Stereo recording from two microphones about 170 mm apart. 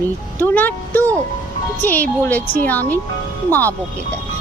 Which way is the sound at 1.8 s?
10° left (ahead or behind).